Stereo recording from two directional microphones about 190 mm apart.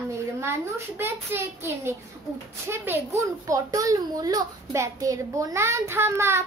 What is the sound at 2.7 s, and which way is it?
A child's voice, 15° right (ahead or behind).